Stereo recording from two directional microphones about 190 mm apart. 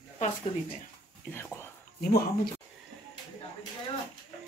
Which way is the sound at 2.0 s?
55° left (ahead or behind).